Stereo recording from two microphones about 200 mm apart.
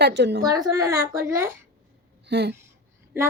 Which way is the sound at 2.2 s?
55° right (ahead or behind).